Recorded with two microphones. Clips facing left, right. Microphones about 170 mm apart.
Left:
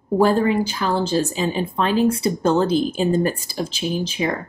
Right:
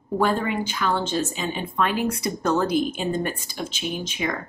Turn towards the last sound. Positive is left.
turn(degrees=30)  # may be behind; listen again after turning